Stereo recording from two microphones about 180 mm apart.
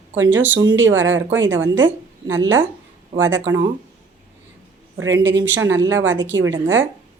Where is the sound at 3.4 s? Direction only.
20° right (ahead or behind).